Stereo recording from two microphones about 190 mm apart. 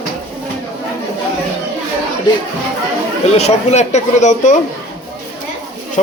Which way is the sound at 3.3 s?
35° left (ahead or behind).